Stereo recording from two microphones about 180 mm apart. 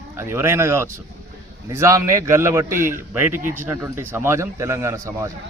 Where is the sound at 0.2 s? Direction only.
15° right (ahead or behind).